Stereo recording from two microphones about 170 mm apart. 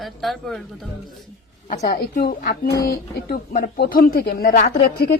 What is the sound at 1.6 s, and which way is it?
Speech, 50° left (ahead or behind).